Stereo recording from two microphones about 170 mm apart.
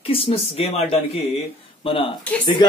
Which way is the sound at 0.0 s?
35° left (ahead or behind).